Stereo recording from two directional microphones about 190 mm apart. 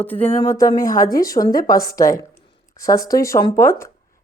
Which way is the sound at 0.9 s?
50° left (ahead or behind).